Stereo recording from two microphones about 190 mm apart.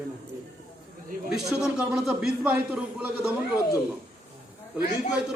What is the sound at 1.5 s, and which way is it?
A man's voice, 5° right (ahead or behind).